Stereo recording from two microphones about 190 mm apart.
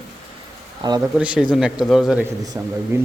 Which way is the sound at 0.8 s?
25° right (ahead or behind).